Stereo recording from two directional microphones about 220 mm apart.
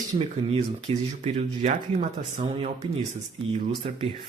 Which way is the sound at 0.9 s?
30° right (ahead or behind).